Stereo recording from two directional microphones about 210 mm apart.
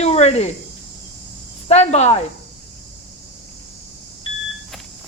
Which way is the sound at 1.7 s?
30° left (ahead or behind).